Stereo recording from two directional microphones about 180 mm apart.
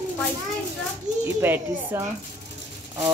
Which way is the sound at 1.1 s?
45° right (ahead or behind).